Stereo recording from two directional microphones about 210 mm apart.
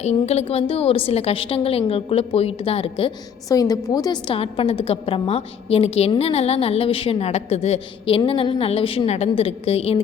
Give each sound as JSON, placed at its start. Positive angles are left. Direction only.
{"t": 0.0, "sound": "a woman's voice", "side_deg": 30}